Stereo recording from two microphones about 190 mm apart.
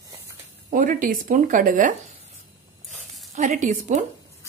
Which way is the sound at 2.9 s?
40° right (ahead or behind).